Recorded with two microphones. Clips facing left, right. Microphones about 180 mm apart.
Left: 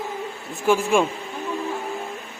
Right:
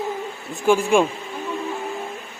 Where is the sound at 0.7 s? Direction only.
Centre (ahead or behind).